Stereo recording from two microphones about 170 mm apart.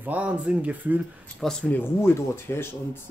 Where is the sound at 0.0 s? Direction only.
10° right (ahead or behind).